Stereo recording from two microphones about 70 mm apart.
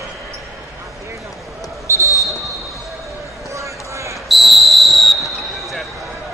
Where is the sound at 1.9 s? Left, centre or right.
Right.